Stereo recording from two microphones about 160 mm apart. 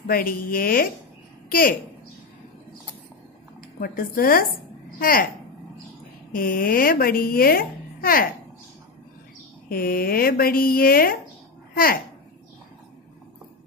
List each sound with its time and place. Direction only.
0.0 s a child's voice: 65° left (ahead or behind)
3.8 s a child's voice: 60° left (ahead or behind)
6.3 s a child's voice: 60° left (ahead or behind)
9.7 s a woman's voice: 70° left (ahead or behind)